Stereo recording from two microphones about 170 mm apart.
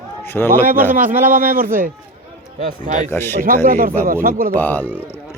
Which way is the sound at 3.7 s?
55° right (ahead or behind).